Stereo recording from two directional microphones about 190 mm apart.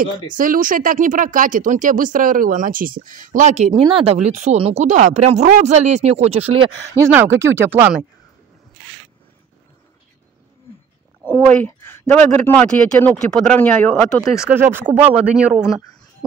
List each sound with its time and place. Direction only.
0.0 s speech: 45° right (ahead or behind)
7.0 s speech: 15° right (ahead or behind)
11.2 s speech: 10° left (ahead or behind)
14.5 s speech: 10° right (ahead or behind)